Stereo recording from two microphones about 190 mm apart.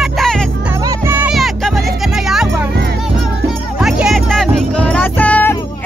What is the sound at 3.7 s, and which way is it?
Music, 5° right (ahead or behind).